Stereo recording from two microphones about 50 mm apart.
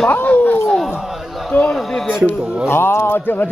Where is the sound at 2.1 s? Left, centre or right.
Left.